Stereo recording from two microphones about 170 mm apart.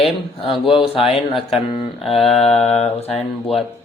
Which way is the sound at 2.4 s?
35° left (ahead or behind).